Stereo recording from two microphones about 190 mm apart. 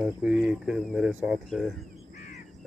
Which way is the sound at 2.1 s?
40° left (ahead or behind).